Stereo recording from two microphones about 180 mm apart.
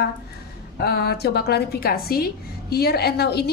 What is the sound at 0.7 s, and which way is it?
A woman's voice, 60° left (ahead or behind).